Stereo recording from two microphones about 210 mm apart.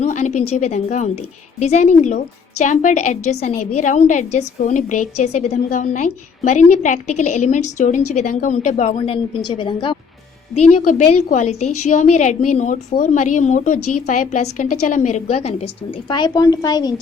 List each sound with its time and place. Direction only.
0.0 s a woman's voice: 35° left (ahead or behind)
13.7 s a woman's voice: 90° left
14.1 s a woman's voice: 35° left (ahead or behind); by 16.9 s 20° left (ahead or behind)